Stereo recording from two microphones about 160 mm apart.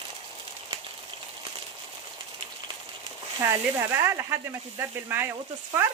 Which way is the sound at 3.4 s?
15° right (ahead or behind).